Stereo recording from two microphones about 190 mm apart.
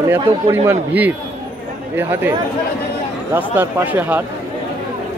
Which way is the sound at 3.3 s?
10° right (ahead or behind).